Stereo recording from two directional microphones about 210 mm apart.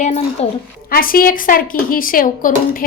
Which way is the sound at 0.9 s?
45° left (ahead or behind).